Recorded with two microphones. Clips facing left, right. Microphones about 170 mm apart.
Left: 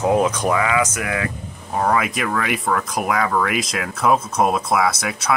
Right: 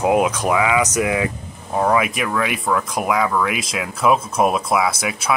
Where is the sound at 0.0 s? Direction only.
10° right (ahead or behind).